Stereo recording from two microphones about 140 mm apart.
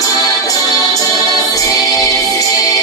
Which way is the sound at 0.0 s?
25° left (ahead or behind).